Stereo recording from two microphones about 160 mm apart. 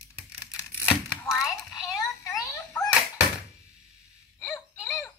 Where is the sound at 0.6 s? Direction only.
15° left (ahead or behind).